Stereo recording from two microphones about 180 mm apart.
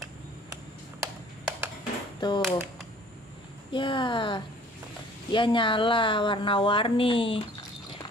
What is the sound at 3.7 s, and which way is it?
A woman's voice, 25° left (ahead or behind).